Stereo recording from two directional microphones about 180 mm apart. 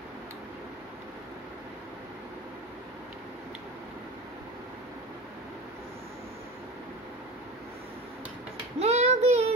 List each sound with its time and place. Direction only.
8.7 s child singing: 35° right (ahead or behind)